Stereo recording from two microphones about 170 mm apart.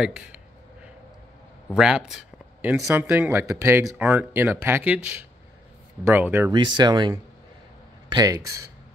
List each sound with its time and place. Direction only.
0.0 s speech: 5° right (ahead or behind)
1.8 s speech: 5° right (ahead or behind)
6.5 s speech: 25° right (ahead or behind)